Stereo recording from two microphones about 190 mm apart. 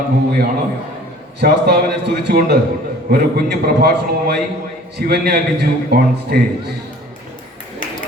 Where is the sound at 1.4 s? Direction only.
55° right (ahead or behind).